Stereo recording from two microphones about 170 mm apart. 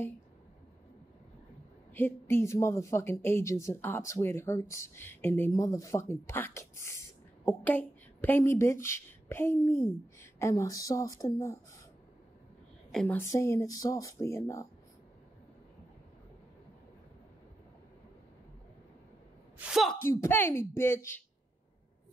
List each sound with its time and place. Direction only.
2.0 s speech: 15° left (ahead or behind)
12.9 s a woman's voice: 5° left (ahead or behind)
13.2 s speech: 15° left (ahead or behind)
19.6 s a sound: centre (ahead or behind)
20.0 s speech: 15° left (ahead or behind)